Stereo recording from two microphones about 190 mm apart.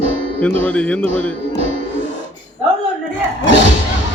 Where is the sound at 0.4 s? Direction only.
5° left (ahead or behind).